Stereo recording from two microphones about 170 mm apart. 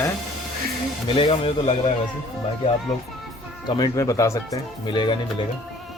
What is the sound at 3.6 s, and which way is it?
Speech, 25° left (ahead or behind).